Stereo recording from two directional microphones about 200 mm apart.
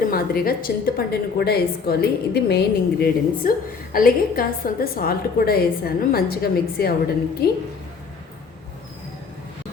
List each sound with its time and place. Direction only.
0.1 s a woman's voice: 50° left (ahead or behind)